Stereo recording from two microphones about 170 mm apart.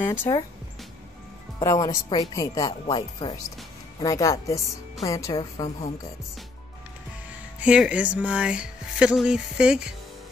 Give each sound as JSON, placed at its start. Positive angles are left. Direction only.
{"t": 0.0, "sound": "speech", "side_deg": 15}
{"t": 1.6, "sound": "speech", "side_deg": 20}
{"t": 4.0, "sound": "speech", "side_deg": 20}
{"t": 7.6, "sound": "speech", "side_deg": -5}